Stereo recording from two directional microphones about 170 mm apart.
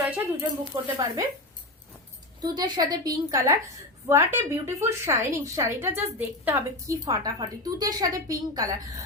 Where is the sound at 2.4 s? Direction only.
25° right (ahead or behind).